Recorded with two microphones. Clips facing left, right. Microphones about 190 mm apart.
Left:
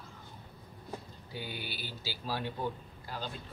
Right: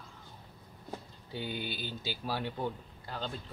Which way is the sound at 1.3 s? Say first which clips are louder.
Right 4 dB; 20° right (ahead or behind).